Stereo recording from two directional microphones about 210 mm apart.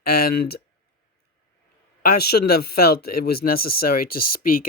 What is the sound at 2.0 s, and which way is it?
Speech, 45° left (ahead or behind).